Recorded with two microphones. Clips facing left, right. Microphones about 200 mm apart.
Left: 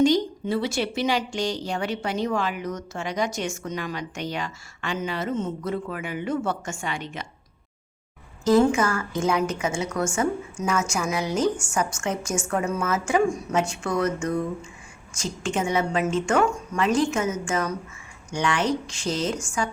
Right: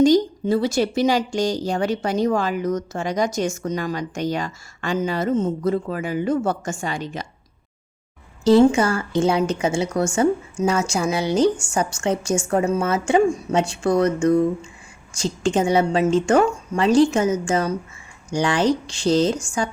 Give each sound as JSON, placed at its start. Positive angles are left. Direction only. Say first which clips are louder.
{"t": 0.0, "sound": "a woman's voice", "louder": "right 5 dB", "side_deg": -40}
{"t": 8.4, "sound": "a woman's voice", "louder": "right 5 dB", "side_deg": -30}